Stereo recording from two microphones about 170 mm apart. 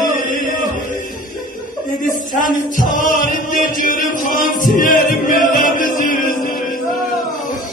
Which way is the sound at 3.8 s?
55° left (ahead or behind).